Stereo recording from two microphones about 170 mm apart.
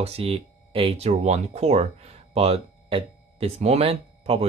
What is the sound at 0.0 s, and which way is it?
Speech, 35° right (ahead or behind).